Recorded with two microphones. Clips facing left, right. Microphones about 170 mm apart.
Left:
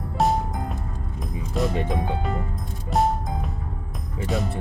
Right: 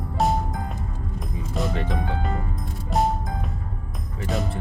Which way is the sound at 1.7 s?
20° left (ahead or behind).